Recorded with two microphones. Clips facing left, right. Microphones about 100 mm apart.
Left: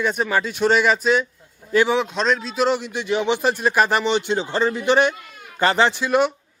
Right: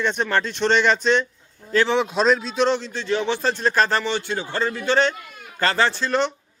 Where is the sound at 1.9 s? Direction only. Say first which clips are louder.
Right 2 dB; centre (ahead or behind).